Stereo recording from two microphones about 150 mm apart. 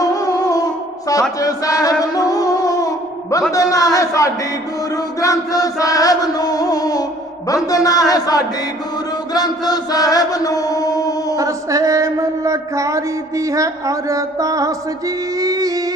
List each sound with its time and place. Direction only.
0.0 s music: 25° left (ahead or behind)
3.5 s chant: 20° left (ahead or behind)
11.3 s music: 20° right (ahead or behind)